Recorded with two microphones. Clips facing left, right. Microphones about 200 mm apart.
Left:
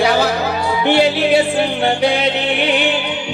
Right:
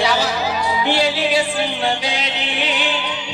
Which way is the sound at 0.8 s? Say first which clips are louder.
Left 6 dB; 60° left (ahead or behind).